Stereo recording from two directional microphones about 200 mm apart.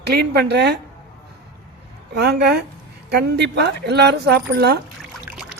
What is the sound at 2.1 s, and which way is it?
Speech, 55° right (ahead or behind).